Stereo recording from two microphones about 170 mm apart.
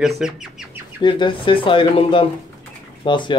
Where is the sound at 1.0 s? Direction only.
30° left (ahead or behind).